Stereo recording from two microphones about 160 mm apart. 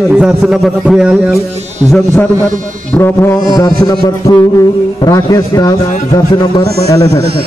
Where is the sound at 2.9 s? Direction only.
15° left (ahead or behind).